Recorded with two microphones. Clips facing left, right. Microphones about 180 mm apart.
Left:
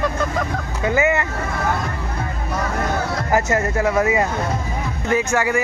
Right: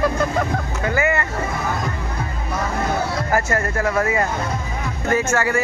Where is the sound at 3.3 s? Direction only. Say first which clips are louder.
Left 4 dB; 20° left (ahead or behind).